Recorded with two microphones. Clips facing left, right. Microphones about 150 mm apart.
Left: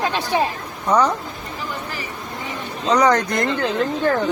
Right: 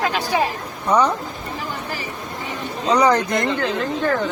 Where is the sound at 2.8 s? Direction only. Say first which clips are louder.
Even; 10° right (ahead or behind).